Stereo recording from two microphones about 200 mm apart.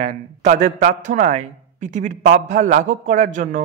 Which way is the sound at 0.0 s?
35° right (ahead or behind).